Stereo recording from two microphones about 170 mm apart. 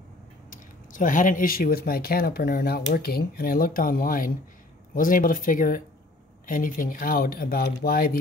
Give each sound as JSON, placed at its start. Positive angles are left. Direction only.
{"t": 0.5, "sound": "speech", "side_deg": 50}